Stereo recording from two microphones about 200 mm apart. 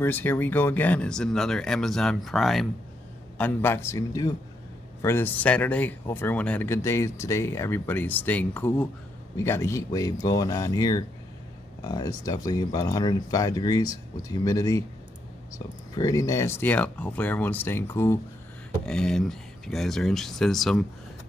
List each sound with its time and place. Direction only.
0.0 s speech: 10° left (ahead or behind)
15.9 s speech: 20° left (ahead or behind); by 20.8 s centre (ahead or behind)